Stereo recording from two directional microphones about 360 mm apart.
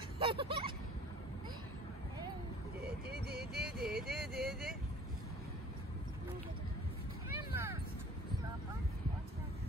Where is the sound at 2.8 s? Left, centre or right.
Right.